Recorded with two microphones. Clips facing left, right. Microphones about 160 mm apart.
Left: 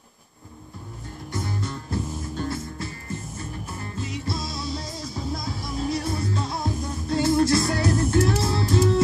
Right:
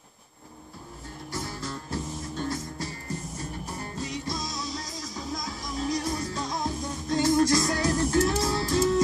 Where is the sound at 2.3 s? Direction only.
35° left (ahead or behind).